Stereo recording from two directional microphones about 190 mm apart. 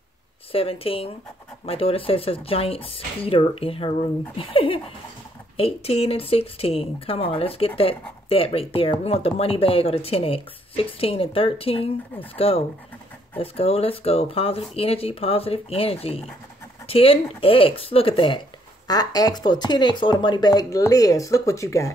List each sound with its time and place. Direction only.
0.5 s speech: 30° left (ahead or behind)